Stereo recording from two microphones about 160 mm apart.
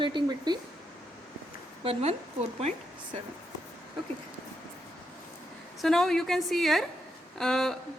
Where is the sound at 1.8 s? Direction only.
40° right (ahead or behind).